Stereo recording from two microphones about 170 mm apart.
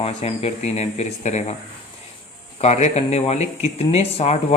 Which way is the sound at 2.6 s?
40° left (ahead or behind).